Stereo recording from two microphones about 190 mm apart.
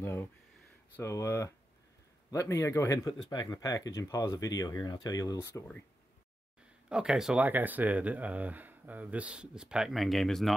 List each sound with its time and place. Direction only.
0.0 s speech: 15° left (ahead or behind)
6.9 s speech: 5° right (ahead or behind)